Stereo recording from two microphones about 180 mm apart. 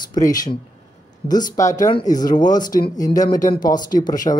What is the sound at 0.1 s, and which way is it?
Speech, 20° left (ahead or behind).